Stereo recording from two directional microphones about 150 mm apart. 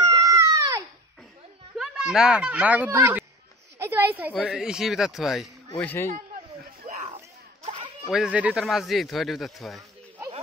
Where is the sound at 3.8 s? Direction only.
15° right (ahead or behind).